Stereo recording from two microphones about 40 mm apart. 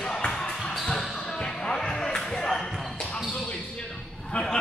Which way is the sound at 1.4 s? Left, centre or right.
Centre.